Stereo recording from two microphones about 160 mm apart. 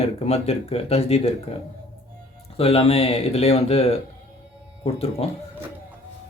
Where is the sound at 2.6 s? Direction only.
40° left (ahead or behind).